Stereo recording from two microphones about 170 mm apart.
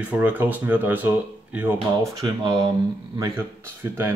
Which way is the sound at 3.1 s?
15° right (ahead or behind).